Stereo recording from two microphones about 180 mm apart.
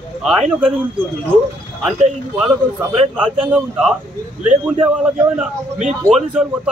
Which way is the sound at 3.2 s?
5° right (ahead or behind).